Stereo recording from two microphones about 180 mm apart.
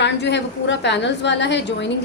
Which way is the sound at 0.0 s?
75° left (ahead or behind).